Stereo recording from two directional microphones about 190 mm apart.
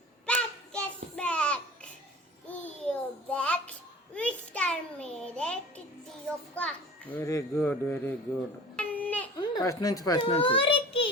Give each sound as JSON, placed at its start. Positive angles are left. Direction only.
{"t": 0.3, "sound": "child singing", "side_deg": 5}
{"t": 4.1, "sound": "a sound", "side_deg": 5}
{"t": 6.2, "sound": "a child's voice", "side_deg": 5}
{"t": 8.7, "sound": "babbling", "side_deg": 10}
{"t": 9.4, "sound": "a child's voice", "side_deg": 20}